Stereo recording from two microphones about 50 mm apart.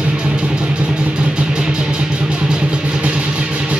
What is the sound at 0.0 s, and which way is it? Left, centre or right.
Vehicle, right.